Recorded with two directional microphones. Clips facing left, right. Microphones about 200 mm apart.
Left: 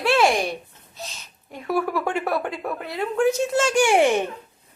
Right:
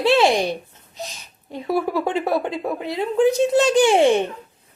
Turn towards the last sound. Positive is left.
turn(degrees=-15)  # may be behind; listen again after turning